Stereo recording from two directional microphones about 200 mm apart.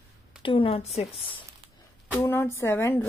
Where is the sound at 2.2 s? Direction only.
10° left (ahead or behind).